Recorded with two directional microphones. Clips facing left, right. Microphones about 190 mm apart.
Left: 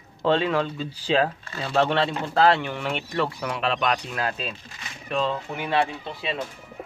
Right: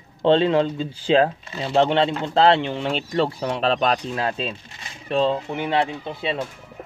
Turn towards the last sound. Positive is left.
turn(degrees=-20)  # may be behind; listen again after turning